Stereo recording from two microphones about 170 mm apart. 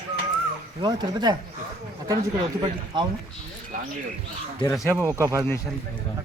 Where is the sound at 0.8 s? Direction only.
25° right (ahead or behind).